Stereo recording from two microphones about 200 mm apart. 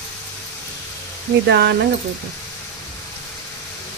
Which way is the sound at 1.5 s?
55° right (ahead or behind).